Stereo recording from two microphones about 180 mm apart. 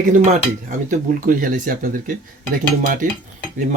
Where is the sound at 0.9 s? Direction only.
50° right (ahead or behind).